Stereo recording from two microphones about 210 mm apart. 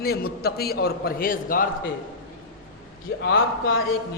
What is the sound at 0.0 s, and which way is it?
A man's voice, 45° left (ahead or behind).